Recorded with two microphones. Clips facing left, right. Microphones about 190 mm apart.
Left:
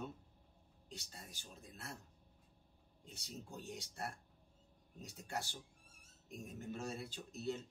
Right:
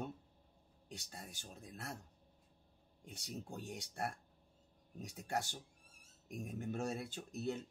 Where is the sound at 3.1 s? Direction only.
55° right (ahead or behind).